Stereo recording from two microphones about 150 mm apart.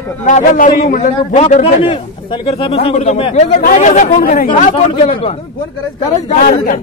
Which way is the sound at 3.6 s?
55° left (ahead or behind).